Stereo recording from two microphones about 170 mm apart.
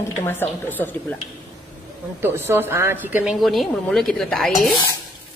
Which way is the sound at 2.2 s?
15° right (ahead or behind).